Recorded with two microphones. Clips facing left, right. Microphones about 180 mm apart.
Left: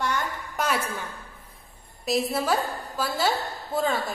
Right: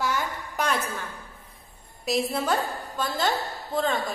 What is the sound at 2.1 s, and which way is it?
A woman's voice, centre (ahead or behind).